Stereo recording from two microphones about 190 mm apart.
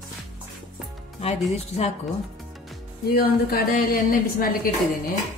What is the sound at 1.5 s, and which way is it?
Speech, 30° left (ahead or behind).